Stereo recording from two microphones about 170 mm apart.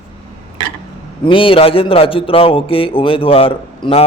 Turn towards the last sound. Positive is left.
turn(degrees=30)  # may be behind; listen again after turning